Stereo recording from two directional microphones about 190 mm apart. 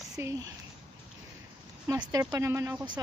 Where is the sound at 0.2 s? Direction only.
15° right (ahead or behind).